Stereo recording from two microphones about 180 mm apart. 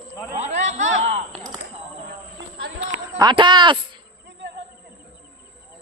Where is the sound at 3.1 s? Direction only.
25° right (ahead or behind).